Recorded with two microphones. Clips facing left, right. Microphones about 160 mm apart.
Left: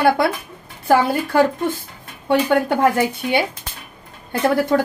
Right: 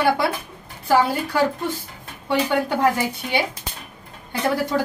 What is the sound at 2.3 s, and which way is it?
Speech, 55° left (ahead or behind).